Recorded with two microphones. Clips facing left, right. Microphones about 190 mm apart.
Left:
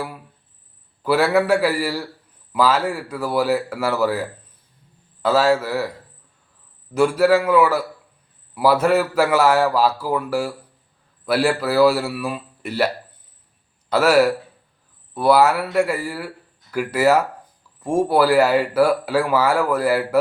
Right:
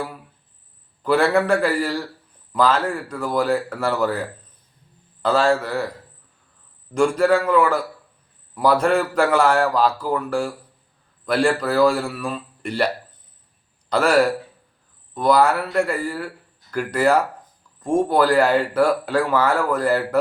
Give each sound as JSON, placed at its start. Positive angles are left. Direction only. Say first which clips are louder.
{"t": 1.0, "sound": "speech", "louder": "even", "side_deg": 5}
{"t": 6.9, "sound": "speech", "louder": "left 1 dB", "side_deg": 5}
{"t": 13.9, "sound": "speech", "louder": "left 2 dB", "side_deg": 5}